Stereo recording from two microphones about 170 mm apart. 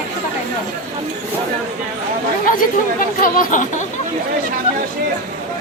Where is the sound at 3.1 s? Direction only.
55° left (ahead or behind).